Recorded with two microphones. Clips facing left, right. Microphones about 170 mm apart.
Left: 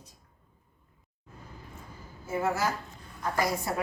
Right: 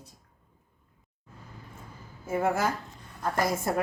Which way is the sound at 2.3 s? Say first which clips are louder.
Right 3 dB; 55° right (ahead or behind).